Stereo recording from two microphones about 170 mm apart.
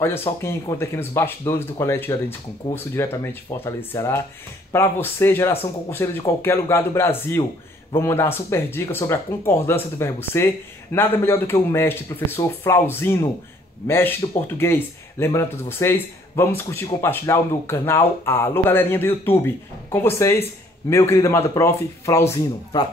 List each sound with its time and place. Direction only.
0.4 s speech: 15° left (ahead or behind)